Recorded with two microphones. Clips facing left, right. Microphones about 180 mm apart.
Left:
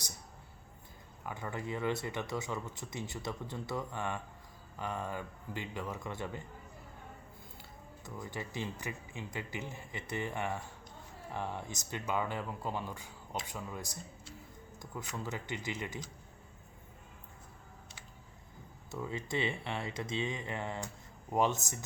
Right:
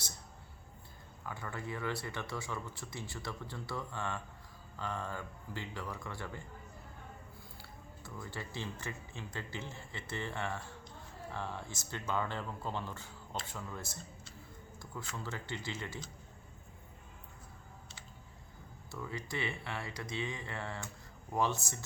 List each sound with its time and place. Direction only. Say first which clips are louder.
1.2 s speech: left 3 dB; 20° left (ahead or behind)
8.0 s speech: left 3 dB; 15° left (ahead or behind)
18.9 s speech: left 4 dB; 20° left (ahead or behind)